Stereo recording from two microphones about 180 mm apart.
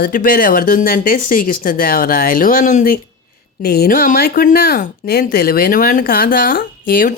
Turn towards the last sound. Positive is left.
turn(degrees=50)  # may be behind; listen again after turning